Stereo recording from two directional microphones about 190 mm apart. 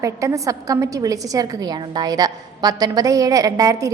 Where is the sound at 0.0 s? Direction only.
15° right (ahead or behind).